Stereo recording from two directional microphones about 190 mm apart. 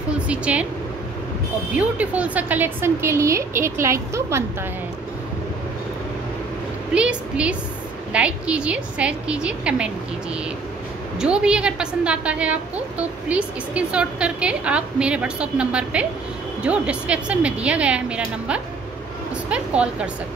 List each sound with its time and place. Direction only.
0.3 s a woman's voice: 5° right (ahead or behind)
1.7 s a woman's voice: 5° right (ahead or behind)
6.9 s a woman's voice: 5° right (ahead or behind)
11.1 s a woman's voice: 5° right (ahead or behind)